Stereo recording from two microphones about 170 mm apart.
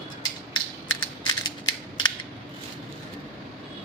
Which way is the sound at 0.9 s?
25° left (ahead or behind).